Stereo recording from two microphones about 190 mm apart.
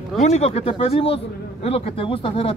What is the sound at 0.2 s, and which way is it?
A man's voice, 35° left (ahead or behind).